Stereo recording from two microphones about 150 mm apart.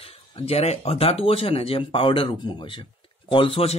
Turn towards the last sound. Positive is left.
turn(degrees=40)  # may be behind; listen again after turning